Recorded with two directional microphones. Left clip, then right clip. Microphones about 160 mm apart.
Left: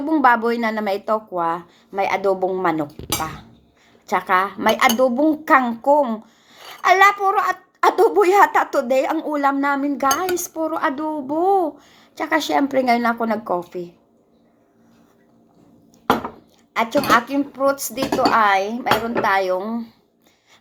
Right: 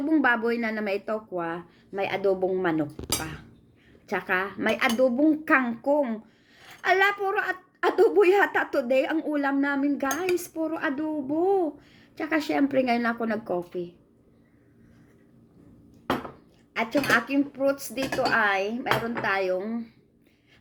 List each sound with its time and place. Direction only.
0.1 s speech: 15° right (ahead or behind)
16.7 s speech: 10° right (ahead or behind)